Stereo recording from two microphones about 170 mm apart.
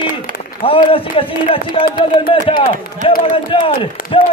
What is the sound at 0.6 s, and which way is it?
A man's voice, 30° left (ahead or behind).